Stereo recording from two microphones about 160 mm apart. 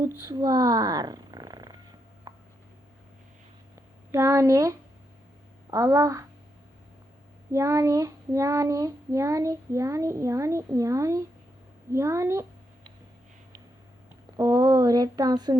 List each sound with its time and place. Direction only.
0.3 s purr: 25° right (ahead or behind)
2.3 s a sound: 20° right (ahead or behind)
4.1 s speech: 20° right (ahead or behind)
5.7 s child singing: 20° right (ahead or behind)
7.5 s child singing: 20° right (ahead or behind)
11.9 s a woman's voice: 20° right (ahead or behind)
14.3 s child singing: 20° right (ahead or behind)